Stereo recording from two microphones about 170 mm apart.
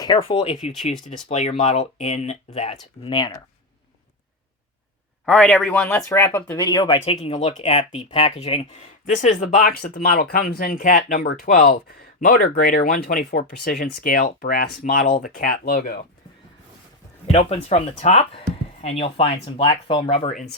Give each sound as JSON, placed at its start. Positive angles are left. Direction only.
{"t": 0.0, "sound": "speech", "side_deg": 30}
{"t": 0.9, "sound": "speech", "side_deg": 5}
{"t": 1.3, "sound": "speech", "side_deg": 35}
{"t": 3.0, "sound": "speech", "side_deg": 25}
{"t": 5.2, "sound": "speech", "side_deg": 5}
{"t": 9.0, "sound": "speech", "side_deg": 50}
{"t": 17.3, "sound": "speech", "side_deg": 40}